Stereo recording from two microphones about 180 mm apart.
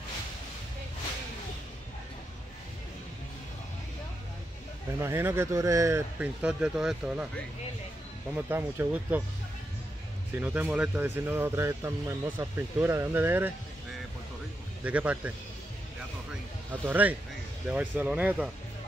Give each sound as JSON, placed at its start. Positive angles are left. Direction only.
{"t": 5.0, "sound": "speech", "side_deg": -15}
{"t": 10.4, "sound": "speech", "side_deg": -10}
{"t": 14.8, "sound": "speech", "side_deg": -10}
{"t": 16.8, "sound": "speech", "side_deg": -10}